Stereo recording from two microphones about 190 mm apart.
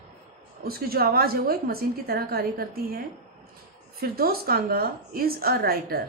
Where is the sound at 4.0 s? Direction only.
50° right (ahead or behind).